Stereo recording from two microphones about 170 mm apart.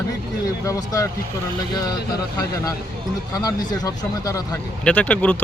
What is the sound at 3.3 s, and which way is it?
Speech, 20° left (ahead or behind).